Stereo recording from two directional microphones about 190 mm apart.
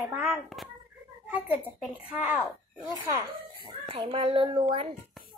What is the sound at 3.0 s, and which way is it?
Speech, 15° right (ahead or behind).